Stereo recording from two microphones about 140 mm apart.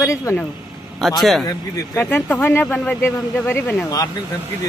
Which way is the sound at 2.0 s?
15° left (ahead or behind).